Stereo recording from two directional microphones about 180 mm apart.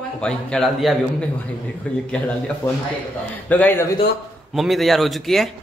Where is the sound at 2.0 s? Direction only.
5° left (ahead or behind).